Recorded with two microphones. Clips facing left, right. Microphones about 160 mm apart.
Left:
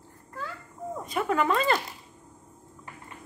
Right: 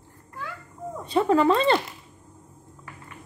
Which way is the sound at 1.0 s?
30° right (ahead or behind).